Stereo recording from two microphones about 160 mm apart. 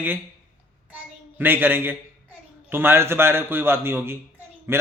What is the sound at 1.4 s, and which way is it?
A man's voice, 10° right (ahead or behind).